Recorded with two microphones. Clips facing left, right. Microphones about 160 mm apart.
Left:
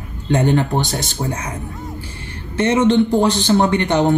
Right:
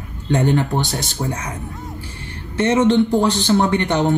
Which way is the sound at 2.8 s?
20° left (ahead or behind).